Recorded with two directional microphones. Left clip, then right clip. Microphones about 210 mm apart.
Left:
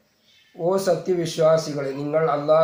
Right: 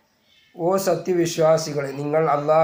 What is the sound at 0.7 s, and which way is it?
Speech, 40° right (ahead or behind).